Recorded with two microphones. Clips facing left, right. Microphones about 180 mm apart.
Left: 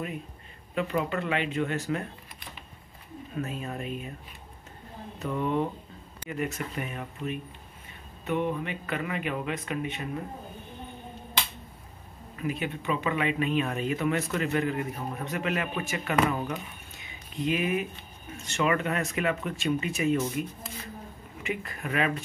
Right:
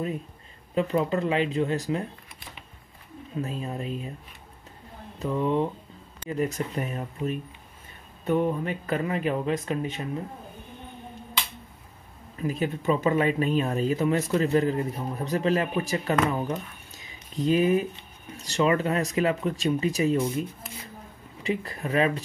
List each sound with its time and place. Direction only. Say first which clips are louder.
0.7 s speech: right 4 dB; 35° right (ahead or behind)
3.3 s speech: right 2 dB; 30° right (ahead or behind)
5.2 s speech: right 3 dB; 30° right (ahead or behind)
12.4 s speech: right 4 dB; 40° right (ahead or behind)